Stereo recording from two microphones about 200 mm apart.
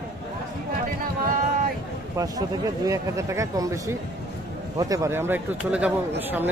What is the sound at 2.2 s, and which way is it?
Speech, 15° right (ahead or behind).